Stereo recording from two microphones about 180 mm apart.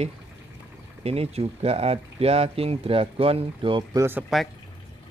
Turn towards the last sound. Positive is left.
turn(degrees=0)  # may be behind; listen again after turning